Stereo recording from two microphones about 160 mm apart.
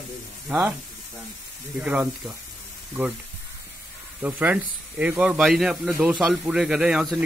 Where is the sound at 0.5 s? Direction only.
10° right (ahead or behind).